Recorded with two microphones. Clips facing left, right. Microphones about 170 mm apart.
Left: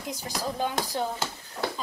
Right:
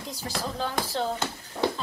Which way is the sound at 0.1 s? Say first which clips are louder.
Left 1 dB; 15° left (ahead or behind).